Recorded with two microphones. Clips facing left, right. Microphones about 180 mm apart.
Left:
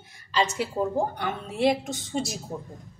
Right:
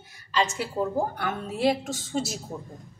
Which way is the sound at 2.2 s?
Centre (ahead or behind).